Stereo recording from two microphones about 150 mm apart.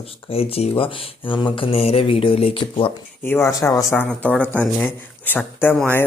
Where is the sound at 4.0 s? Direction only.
10° left (ahead or behind).